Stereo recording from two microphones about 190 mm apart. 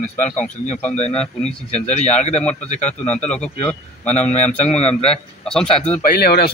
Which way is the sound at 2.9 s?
5° left (ahead or behind).